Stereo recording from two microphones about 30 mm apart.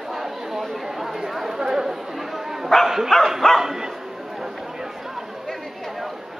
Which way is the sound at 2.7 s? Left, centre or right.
Centre.